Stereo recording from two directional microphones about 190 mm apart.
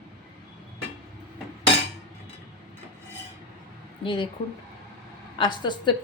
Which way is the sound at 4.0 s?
25° left (ahead or behind).